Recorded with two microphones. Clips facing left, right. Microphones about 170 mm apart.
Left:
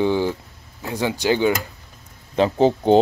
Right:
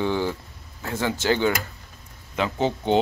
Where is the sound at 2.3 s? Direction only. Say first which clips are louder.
Left 7 dB; 35° left (ahead or behind).